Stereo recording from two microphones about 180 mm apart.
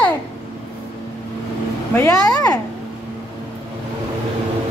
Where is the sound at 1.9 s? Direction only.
20° left (ahead or behind).